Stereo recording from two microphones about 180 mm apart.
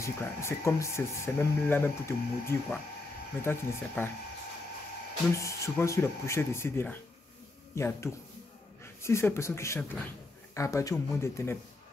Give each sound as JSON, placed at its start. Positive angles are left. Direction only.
{"t": 0.0, "sound": "speech", "side_deg": 15}
{"t": 5.3, "sound": "speech", "side_deg": 15}